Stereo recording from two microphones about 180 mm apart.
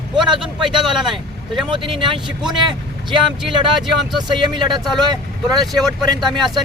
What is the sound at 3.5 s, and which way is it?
Speech, 25° right (ahead or behind).